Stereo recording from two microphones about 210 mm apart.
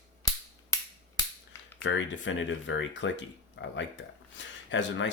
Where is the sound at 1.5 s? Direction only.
65° left (ahead or behind).